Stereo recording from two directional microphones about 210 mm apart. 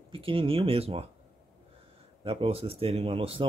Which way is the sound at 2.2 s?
25° right (ahead or behind).